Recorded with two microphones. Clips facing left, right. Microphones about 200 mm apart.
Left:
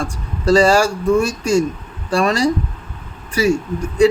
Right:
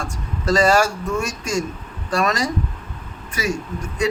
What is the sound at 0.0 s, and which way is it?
Speech, 30° left (ahead or behind).